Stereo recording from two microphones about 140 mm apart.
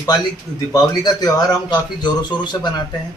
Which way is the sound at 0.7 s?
30° left (ahead or behind).